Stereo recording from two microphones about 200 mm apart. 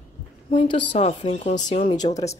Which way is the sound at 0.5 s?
25° left (ahead or behind).